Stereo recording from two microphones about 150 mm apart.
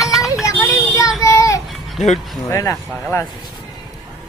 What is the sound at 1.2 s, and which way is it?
Child singing, 20° left (ahead or behind).